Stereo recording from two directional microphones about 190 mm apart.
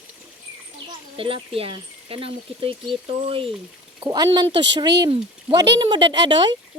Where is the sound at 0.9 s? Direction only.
30° right (ahead or behind).